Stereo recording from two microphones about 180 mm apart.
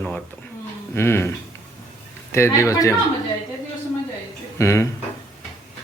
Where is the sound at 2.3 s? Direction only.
15° left (ahead or behind).